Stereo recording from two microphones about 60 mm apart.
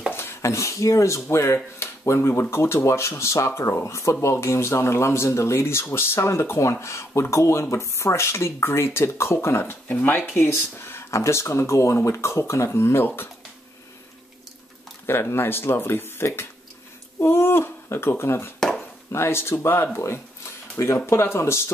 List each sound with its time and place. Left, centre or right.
0.1 s a sound: left
0.4 s speech: left
15.0 s speech: left